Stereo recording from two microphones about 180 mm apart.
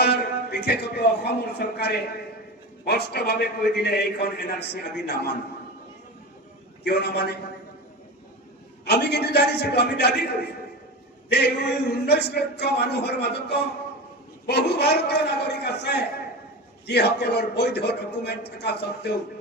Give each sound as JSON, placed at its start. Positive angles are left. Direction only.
{"t": 0.0, "sound": "a man's voice", "side_deg": 70}
{"t": 6.8, "sound": "a man's voice", "side_deg": 65}
{"t": 8.8, "sound": "speech", "side_deg": 70}